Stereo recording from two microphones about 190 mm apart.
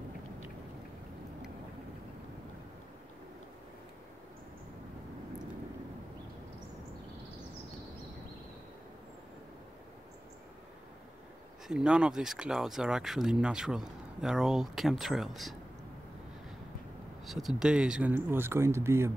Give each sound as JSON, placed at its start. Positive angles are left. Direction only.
{"t": 11.6, "sound": "speech", "side_deg": -5}
{"t": 17.2, "sound": "speech", "side_deg": 0}